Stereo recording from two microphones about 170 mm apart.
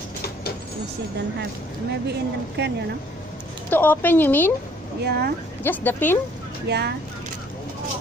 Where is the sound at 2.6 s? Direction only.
75° right (ahead or behind).